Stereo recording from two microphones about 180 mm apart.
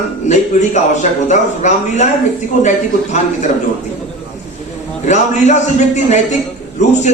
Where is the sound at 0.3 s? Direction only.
40° left (ahead or behind).